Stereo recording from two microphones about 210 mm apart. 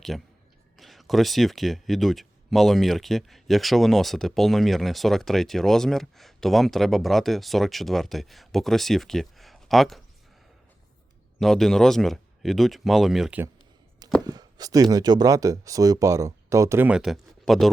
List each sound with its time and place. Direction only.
0.1 s speech: centre (ahead or behind)
11.3 s speech: centre (ahead or behind)
14.3 s speech: 20° right (ahead or behind); by 17.7 s centre (ahead or behind)